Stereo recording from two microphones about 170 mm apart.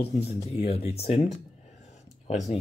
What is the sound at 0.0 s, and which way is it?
Speech, 35° left (ahead or behind).